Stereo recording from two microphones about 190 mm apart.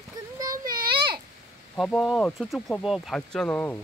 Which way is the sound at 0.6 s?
50° right (ahead or behind).